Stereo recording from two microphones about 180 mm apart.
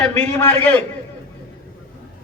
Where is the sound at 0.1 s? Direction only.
10° left (ahead or behind).